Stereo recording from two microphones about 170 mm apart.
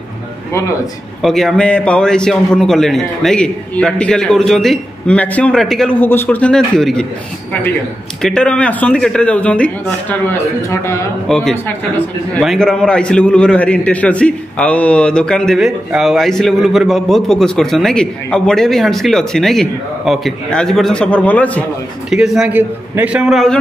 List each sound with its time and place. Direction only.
0.5 s a man's voice: 15° left (ahead or behind)
1.2 s a man's voice: centre (ahead or behind)
8.2 s speech: 5° left (ahead or behind)
11.2 s a man's voice: 5° left (ahead or behind)
22.1 s a man's voice: 5° right (ahead or behind)